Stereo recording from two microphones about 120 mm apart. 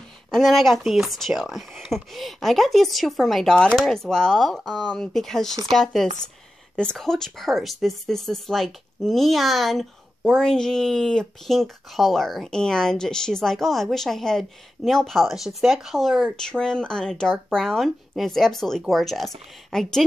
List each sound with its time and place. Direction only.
0.3 s speech: centre (ahead or behind)